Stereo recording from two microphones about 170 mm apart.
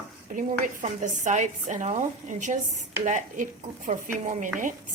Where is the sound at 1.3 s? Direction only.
45° right (ahead or behind).